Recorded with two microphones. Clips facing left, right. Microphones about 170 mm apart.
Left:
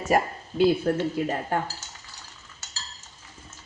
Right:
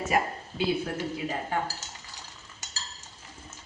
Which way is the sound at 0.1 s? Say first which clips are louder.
Left 6 dB; 45° left (ahead or behind).